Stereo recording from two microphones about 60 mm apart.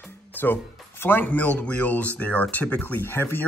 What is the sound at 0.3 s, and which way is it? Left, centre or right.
Music, left.